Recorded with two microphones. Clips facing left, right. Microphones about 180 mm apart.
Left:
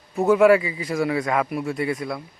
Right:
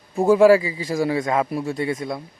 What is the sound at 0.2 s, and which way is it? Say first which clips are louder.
A man's voice: right 2 dB; 30° right (ahead or behind).